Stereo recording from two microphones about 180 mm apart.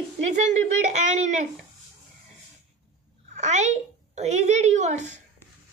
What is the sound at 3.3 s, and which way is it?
A child's voice, 40° right (ahead or behind).